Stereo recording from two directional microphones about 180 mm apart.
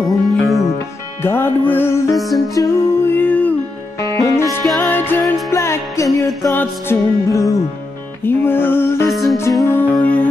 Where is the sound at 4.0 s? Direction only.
15° left (ahead or behind).